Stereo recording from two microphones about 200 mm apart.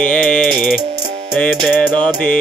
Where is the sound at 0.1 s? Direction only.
5° left (ahead or behind).